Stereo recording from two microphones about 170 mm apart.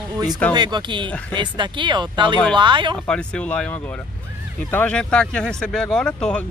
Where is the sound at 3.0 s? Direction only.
5° left (ahead or behind).